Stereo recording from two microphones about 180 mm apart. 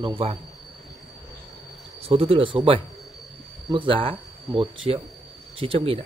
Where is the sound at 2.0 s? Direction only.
35° right (ahead or behind).